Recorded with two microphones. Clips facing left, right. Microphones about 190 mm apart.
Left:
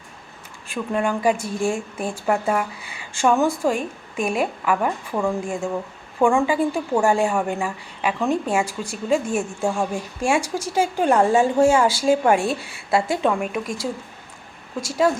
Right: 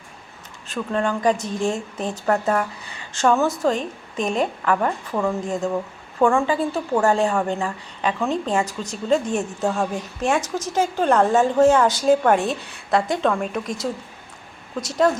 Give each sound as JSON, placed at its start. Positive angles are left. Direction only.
{"t": 0.7, "sound": "a woman's voice", "side_deg": 10}